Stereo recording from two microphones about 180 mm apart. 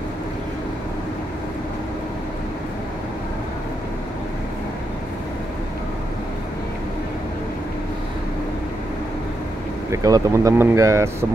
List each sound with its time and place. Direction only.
9.8 s speech: 20° right (ahead or behind)